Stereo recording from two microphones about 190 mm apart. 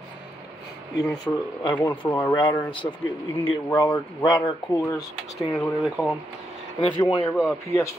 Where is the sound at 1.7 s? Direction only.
10° left (ahead or behind).